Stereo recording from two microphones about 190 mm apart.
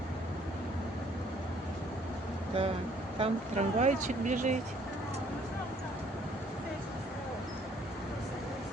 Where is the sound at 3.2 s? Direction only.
35° right (ahead or behind).